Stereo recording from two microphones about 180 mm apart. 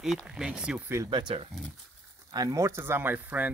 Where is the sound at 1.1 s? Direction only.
25° right (ahead or behind).